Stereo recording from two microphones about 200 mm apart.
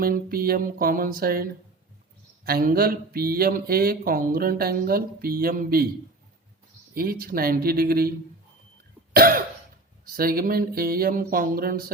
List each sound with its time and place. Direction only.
0.0 s speech: 45° right (ahead or behind)
6.9 s speech: 45° right (ahead or behind)
9.1 s speech: 45° right (ahead or behind)